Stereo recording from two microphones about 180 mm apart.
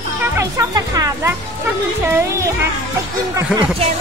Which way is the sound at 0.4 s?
20° right (ahead or behind).